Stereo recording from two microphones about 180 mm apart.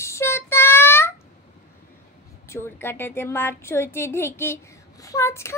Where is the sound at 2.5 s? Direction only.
15° left (ahead or behind).